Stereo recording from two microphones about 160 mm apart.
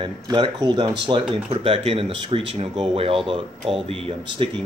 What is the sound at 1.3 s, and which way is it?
Speech, 35° right (ahead or behind).